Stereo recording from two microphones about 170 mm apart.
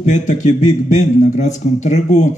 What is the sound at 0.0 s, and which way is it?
Speech, 45° left (ahead or behind).